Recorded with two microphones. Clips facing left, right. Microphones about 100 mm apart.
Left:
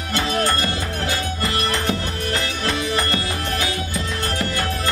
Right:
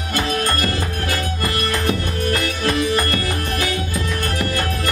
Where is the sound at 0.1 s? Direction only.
25° left (ahead or behind).